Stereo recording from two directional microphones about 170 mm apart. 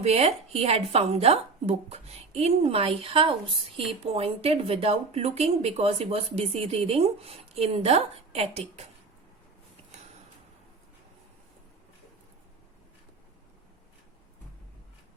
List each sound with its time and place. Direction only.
0.0 s a woman's voice: 40° right (ahead or behind)